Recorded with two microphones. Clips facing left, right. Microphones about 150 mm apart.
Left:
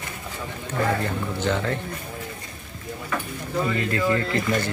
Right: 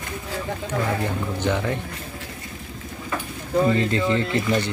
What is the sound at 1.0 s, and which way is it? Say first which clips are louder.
Speech: right 1 dB; 15° right (ahead or behind).